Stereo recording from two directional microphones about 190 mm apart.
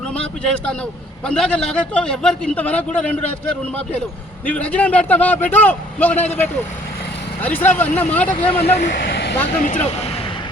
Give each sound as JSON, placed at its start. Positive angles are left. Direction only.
{"t": 0.1, "sound": "a man's voice", "side_deg": 5}
{"t": 4.4, "sound": "a man's voice", "side_deg": 5}
{"t": 8.3, "sound": "speech", "side_deg": 30}
{"t": 8.9, "sound": "vehicle", "side_deg": 60}